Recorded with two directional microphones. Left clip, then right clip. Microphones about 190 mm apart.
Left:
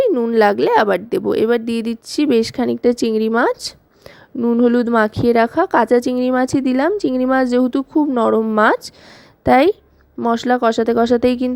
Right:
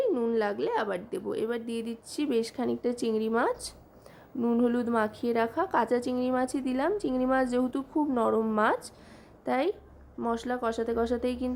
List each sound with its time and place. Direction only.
0.0 s speech: 40° left (ahead or behind)
4.4 s a woman's voice: 35° left (ahead or behind)